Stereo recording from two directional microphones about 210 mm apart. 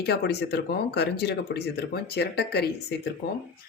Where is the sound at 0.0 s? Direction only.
50° left (ahead or behind).